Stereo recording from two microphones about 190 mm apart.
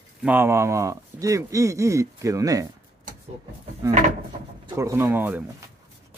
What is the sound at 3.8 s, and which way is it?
Speech, 15° right (ahead or behind).